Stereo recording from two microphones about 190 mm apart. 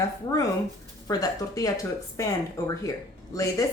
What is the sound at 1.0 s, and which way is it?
Speech, 20° left (ahead or behind).